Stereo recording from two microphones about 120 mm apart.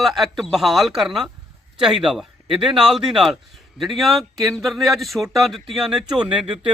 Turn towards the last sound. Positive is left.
turn(degrees=-45)  # may be behind; listen again after turning